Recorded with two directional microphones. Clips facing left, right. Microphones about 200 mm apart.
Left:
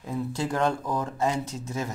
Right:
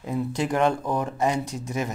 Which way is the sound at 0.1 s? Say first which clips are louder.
Right 3 dB; 15° right (ahead or behind).